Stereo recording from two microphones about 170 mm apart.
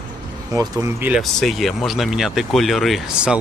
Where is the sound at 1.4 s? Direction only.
Centre (ahead or behind).